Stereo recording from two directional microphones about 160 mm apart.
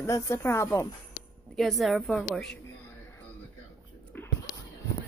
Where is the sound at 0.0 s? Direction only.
20° left (ahead or behind).